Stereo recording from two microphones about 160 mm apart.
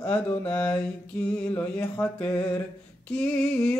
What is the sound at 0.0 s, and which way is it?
Mantra, 10° left (ahead or behind).